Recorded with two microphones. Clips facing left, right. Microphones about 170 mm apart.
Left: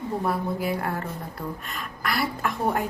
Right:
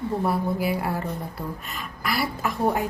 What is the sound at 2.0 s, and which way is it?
Speech, 5° right (ahead or behind).